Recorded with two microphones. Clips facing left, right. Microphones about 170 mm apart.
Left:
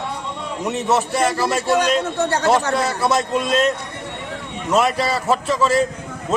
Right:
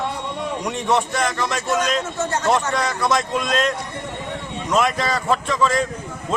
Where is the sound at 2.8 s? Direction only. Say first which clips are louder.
Left 2 dB; 5° left (ahead or behind).